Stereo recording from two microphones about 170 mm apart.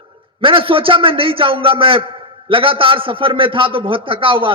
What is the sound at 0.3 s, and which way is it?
A man's voice, 30° right (ahead or behind).